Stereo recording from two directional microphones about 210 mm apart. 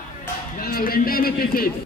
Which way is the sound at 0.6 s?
45° left (ahead or behind).